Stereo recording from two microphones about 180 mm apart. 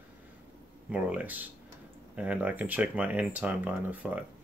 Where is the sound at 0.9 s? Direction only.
10° right (ahead or behind).